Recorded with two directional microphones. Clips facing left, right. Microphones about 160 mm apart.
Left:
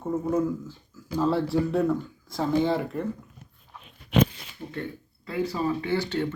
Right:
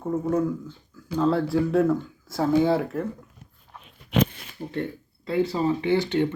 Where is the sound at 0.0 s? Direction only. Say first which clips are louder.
Right 1 dB; 5° left (ahead or behind).